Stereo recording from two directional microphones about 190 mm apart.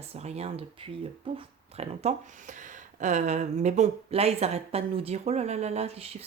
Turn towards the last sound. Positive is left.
turn(degrees=-35)  # may be behind; listen again after turning